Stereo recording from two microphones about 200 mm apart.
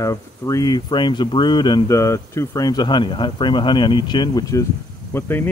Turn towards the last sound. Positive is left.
turn(degrees=10)  # may be behind; listen again after turning